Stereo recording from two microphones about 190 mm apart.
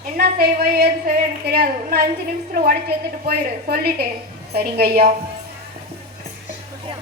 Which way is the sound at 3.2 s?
55° right (ahead or behind).